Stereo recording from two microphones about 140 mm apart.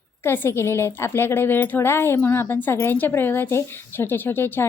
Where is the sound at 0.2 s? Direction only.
15° left (ahead or behind).